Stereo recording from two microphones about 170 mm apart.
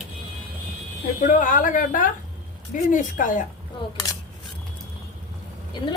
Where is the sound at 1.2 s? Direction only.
50° left (ahead or behind).